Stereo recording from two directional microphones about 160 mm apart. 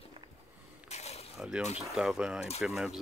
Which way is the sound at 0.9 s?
40° left (ahead or behind).